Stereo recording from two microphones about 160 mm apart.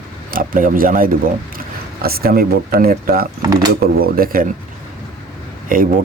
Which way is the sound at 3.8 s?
70° right (ahead or behind).